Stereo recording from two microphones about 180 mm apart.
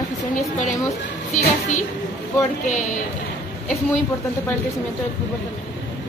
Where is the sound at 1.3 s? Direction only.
45° left (ahead or behind).